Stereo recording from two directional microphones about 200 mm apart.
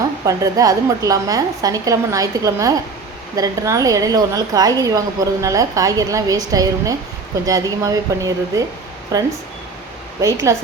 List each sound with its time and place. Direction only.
0.3 s a woman's voice: 15° right (ahead or behind)
10.5 s a woman's voice: 15° right (ahead or behind)